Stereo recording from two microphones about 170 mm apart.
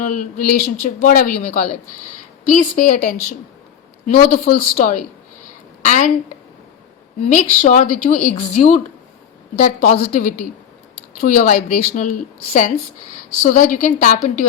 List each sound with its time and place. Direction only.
0.0 s a woman's voice: 55° left (ahead or behind)
7.3 s a woman's voice: 50° left (ahead or behind)
8.3 s a woman's voice: 40° left (ahead or behind)
13.4 s a woman's voice: 45° left (ahead or behind)